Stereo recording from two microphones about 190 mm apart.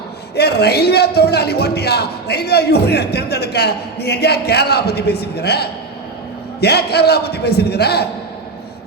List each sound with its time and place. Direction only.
0.3 s a man's voice: 60° left (ahead or behind)